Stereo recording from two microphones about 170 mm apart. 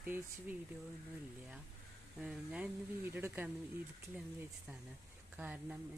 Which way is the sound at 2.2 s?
5° right (ahead or behind).